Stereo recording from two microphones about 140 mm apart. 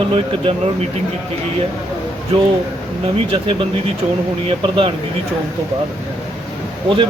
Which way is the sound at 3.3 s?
40° right (ahead or behind).